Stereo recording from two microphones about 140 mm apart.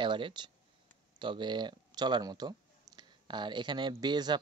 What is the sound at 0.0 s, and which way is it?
A man's voice, 35° right (ahead or behind).